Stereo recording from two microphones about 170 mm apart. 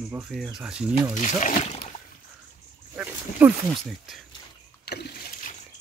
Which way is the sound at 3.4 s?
10° right (ahead or behind).